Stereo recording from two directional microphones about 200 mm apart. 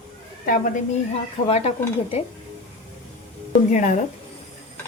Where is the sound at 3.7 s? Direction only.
40° left (ahead or behind).